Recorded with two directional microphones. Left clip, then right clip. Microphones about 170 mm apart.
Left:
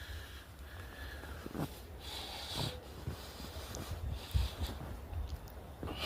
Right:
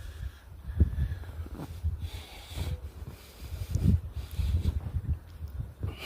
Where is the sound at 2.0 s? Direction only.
40° right (ahead or behind).